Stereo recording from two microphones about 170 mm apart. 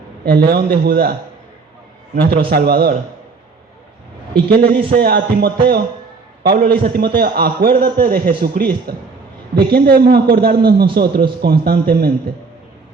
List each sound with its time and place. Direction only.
0.3 s a man's voice: 65° right (ahead or behind)
2.5 s music: 65° right (ahead or behind)
4.4 s a man's voice: 60° right (ahead or behind)
4.9 s music: 65° right (ahead or behind)
6.4 s a man's voice: 65° right (ahead or behind)
9.6 s music: 70° right (ahead or behind)
10.3 s a man's voice: 65° right (ahead or behind)